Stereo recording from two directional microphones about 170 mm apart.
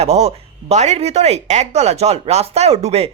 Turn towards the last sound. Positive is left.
turn(degrees=-35)  # may be behind; listen again after turning